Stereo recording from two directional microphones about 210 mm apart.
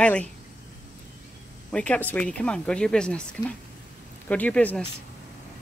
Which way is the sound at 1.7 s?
5° left (ahead or behind).